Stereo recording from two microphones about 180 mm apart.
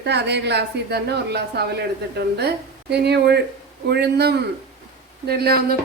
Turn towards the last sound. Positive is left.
turn(degrees=-60)  # may be behind; listen again after turning